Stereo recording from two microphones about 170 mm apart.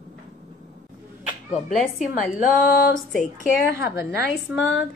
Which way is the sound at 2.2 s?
50° left (ahead or behind).